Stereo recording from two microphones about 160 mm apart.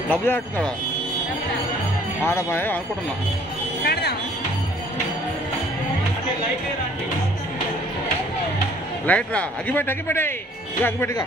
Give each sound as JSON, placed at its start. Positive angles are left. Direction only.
{"t": 0.1, "sound": "speech", "side_deg": 10}
{"t": 2.2, "sound": "speech", "side_deg": 15}
{"t": 3.8, "sound": "a sound", "side_deg": 80}
{"t": 9.0, "sound": "speech", "side_deg": 10}